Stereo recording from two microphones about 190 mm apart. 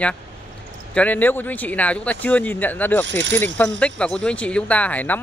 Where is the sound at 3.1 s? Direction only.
70° right (ahead or behind).